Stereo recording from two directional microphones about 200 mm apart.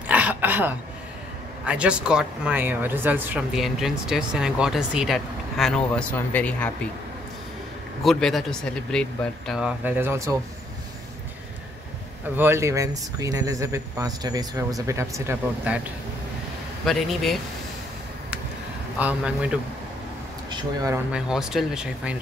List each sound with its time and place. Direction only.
0.0 s throat clearing: 10° right (ahead or behind)
1.7 s speech: 5° right (ahead or behind)
8.0 s speech: centre (ahead or behind)
12.4 s speech: 10° right (ahead or behind)
16.8 s speech: centre (ahead or behind)
18.9 s speech: 5° right (ahead or behind)
20.4 s speech: 20° right (ahead or behind)
21.1 s speech: 5° right (ahead or behind)